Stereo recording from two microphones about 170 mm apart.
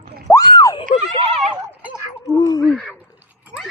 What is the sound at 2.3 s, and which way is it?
Speech, 20° left (ahead or behind).